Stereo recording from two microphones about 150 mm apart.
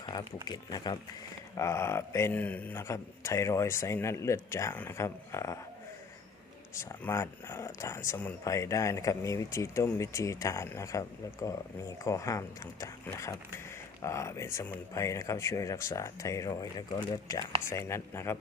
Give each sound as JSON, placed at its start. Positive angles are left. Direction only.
{"t": 0.0, "sound": "a sound", "side_deg": 30}
{"t": 0.4, "sound": "speech", "side_deg": 30}
{"t": 6.7, "sound": "speech", "side_deg": 20}